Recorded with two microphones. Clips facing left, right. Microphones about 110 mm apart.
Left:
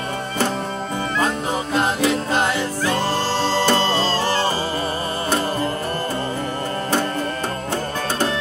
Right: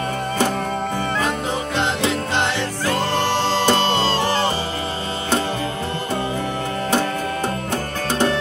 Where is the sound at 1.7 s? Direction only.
25° right (ahead or behind).